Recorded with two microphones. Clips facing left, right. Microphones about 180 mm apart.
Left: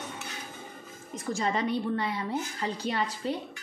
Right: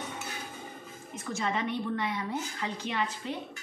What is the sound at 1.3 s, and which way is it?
A woman's voice, 35° left (ahead or behind).